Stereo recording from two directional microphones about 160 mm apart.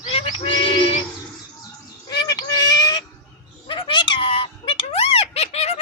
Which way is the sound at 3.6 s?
30° left (ahead or behind).